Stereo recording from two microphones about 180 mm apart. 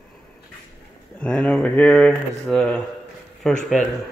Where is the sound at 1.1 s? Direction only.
5° left (ahead or behind).